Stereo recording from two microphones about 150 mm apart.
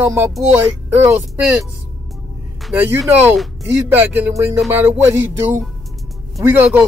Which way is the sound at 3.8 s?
15° right (ahead or behind).